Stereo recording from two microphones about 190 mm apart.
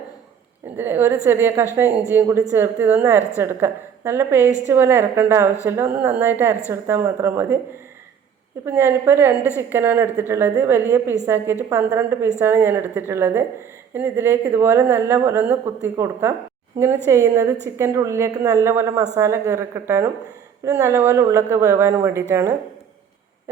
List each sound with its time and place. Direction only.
0.8 s speech: 10° right (ahead or behind)
8.6 s speech: 10° right (ahead or behind)